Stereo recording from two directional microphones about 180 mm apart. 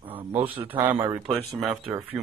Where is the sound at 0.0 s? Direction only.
30° right (ahead or behind).